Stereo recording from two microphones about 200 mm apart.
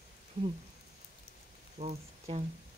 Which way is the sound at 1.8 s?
30° right (ahead or behind).